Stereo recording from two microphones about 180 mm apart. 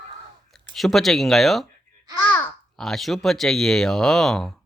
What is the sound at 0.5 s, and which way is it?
A child's voice, centre (ahead or behind).